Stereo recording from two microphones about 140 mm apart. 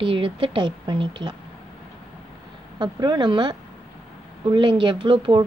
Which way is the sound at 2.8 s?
30° right (ahead or behind).